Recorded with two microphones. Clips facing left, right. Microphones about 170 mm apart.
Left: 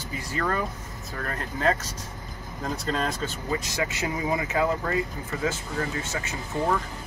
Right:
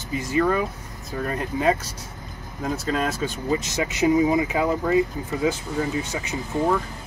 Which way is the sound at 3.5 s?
20° right (ahead or behind).